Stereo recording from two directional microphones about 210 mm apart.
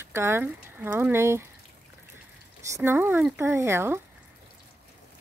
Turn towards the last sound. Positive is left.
turn(degrees=-10)  # may be behind; listen again after turning